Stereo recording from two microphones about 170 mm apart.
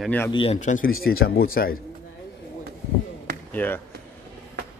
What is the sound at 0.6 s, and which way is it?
A man's voice, 50° left (ahead or behind).